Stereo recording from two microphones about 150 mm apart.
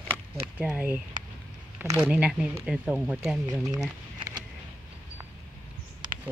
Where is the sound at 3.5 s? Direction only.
25° right (ahead or behind).